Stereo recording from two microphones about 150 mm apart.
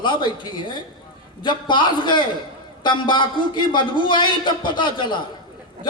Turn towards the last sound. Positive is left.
turn(degrees=30)  # may be behind; listen again after turning